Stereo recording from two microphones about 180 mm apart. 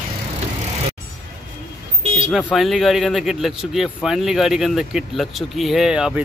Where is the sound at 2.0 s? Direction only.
25° right (ahead or behind).